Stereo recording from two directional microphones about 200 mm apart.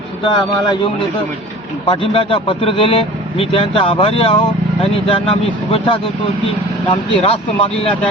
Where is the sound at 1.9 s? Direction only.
30° left (ahead or behind).